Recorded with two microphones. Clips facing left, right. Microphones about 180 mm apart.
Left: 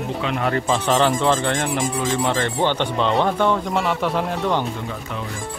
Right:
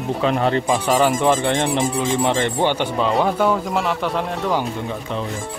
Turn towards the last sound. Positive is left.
turn(degrees=0)  # may be behind; listen again after turning